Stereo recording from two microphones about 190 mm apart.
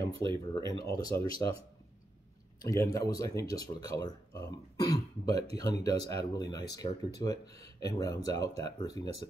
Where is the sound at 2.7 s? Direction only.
15° left (ahead or behind).